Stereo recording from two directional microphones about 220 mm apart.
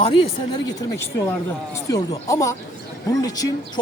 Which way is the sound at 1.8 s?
15° left (ahead or behind).